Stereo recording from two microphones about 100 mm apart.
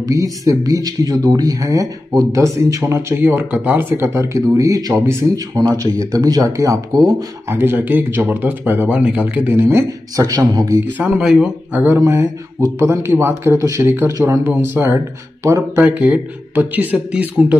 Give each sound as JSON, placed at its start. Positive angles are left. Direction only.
{"t": 0.0, "sound": "speech", "side_deg": -35}
{"t": 7.4, "sound": "speech", "side_deg": -20}
{"t": 10.9, "sound": "speech", "side_deg": -15}
{"t": 11.2, "sound": "a man's voice", "side_deg": -5}
{"t": 11.7, "sound": "speech", "side_deg": -20}
{"t": 15.8, "sound": "speech", "side_deg": -15}